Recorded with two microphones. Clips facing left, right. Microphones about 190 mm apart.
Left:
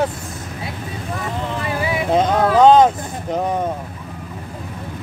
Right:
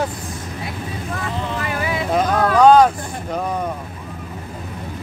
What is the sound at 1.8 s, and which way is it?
Vehicle, 20° left (ahead or behind).